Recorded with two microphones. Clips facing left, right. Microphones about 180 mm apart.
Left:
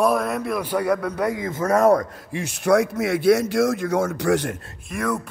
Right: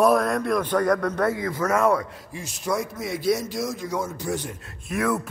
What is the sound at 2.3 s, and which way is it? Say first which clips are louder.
A man's voice: left 9 dB; 70° left (ahead or behind).